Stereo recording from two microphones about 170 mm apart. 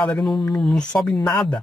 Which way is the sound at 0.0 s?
5° left (ahead or behind).